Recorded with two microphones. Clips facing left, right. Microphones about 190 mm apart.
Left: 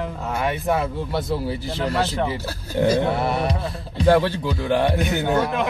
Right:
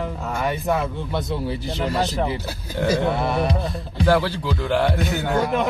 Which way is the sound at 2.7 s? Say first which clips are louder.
Left 3 dB; 15° left (ahead or behind).